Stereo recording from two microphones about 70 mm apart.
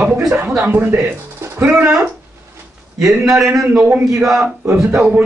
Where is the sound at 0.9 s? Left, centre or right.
Right.